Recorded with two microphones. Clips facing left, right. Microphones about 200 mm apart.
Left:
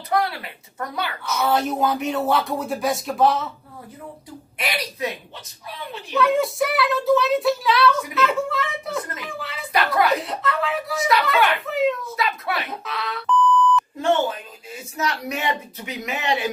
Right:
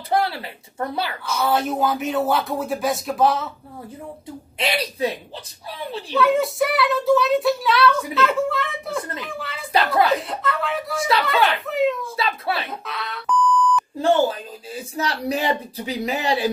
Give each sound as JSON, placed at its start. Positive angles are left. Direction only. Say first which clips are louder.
{"t": 0.1, "sound": "a sound", "louder": "right 1 dB", "side_deg": -30}
{"t": 1.3, "sound": "speech", "louder": "even", "side_deg": 0}
{"t": 4.6, "sound": "a woman's voice", "louder": "right 4 dB", "side_deg": -30}
{"t": 6.1, "sound": "speech", "louder": "right 1 dB", "side_deg": 0}
{"t": 9.7, "sound": "speech", "louder": "right 2 dB", "side_deg": -30}
{"t": 10.0, "sound": "speech", "louder": "even", "side_deg": 0}
{"t": 12.2, "sound": "speech", "louder": "right 1 dB", "side_deg": -30}
{"t": 12.6, "sound": "alarm clock", "louder": "left 1 dB", "side_deg": 0}
{"t": 13.9, "sound": "speech", "louder": "right 3 dB", "side_deg": -35}